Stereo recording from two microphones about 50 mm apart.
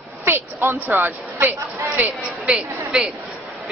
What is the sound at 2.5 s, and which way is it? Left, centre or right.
Speech, centre.